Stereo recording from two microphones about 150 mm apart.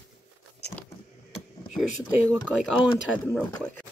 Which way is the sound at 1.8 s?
10° left (ahead or behind).